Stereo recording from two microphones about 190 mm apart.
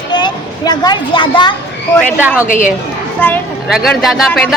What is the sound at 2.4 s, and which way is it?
Speech, 45° left (ahead or behind).